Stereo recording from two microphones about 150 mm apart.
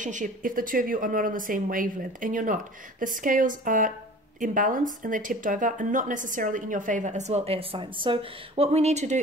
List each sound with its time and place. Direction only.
0.0 s a woman's voice: 55° right (ahead or behind)